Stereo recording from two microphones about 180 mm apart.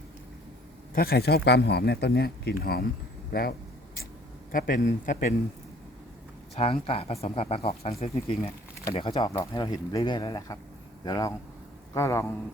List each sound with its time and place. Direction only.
0.9 s speech: 60° left (ahead or behind)
4.5 s a man's voice: 50° left (ahead or behind)
6.6 s a man's voice: 30° left (ahead or behind); by 12.3 s 15° left (ahead or behind)